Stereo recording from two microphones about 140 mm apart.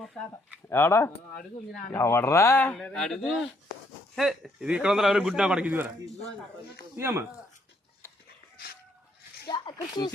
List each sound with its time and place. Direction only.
0.1 s speech: 5° left (ahead or behind)
0.7 s speech: 20° left (ahead or behind)
2.7 s a man's voice: 5° left (ahead or behind); by 5.9 s 10° right (ahead or behind)
6.9 s speech: 15° right (ahead or behind)
9.5 s speech: 30° left (ahead or behind)